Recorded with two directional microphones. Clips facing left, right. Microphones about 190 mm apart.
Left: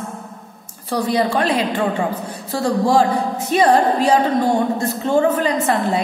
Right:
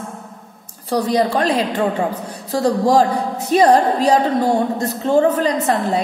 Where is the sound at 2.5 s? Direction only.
40° right (ahead or behind).